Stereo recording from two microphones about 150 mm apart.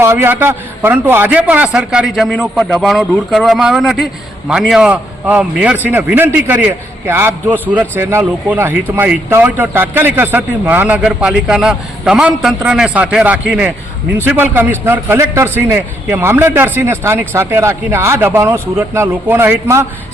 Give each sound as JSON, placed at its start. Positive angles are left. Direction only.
{"t": 0.0, "sound": "a man's voice", "side_deg": -15}